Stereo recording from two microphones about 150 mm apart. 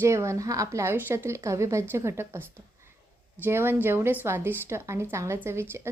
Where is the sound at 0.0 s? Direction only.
20° right (ahead or behind).